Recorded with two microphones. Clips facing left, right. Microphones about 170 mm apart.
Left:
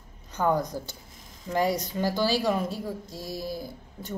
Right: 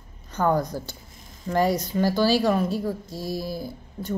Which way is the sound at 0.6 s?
15° left (ahead or behind).